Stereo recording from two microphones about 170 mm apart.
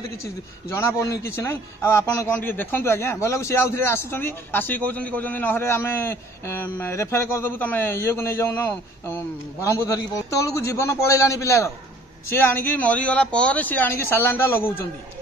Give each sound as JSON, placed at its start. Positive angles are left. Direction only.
{"t": 0.7, "sound": "a man's voice", "side_deg": 15}